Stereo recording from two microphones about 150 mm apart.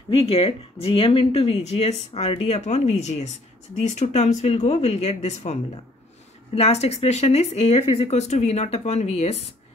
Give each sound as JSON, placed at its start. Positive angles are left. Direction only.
{"t": 0.1, "sound": "speech", "side_deg": 40}